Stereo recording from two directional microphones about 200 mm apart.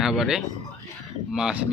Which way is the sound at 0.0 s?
Centre (ahead or behind).